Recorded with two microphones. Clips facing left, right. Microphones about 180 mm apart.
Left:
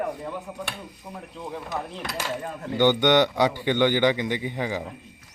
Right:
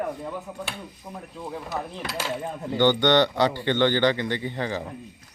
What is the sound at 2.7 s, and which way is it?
Speech, 15° left (ahead or behind).